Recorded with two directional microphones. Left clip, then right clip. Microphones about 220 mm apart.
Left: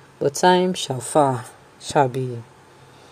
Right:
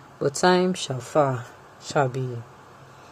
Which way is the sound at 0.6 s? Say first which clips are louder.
Left 3 dB; 35° left (ahead or behind).